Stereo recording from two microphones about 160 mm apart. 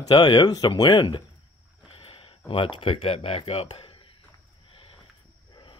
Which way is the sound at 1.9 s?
35° left (ahead or behind).